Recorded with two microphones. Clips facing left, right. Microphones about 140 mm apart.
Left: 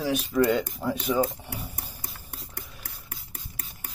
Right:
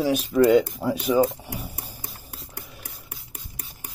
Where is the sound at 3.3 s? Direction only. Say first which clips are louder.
Right 1 dB; 15° right (ahead or behind).